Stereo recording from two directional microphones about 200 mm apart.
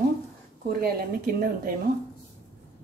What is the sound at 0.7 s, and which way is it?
A woman's voice, 50° right (ahead or behind).